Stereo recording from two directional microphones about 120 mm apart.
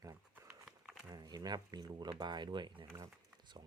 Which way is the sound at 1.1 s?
30° right (ahead or behind).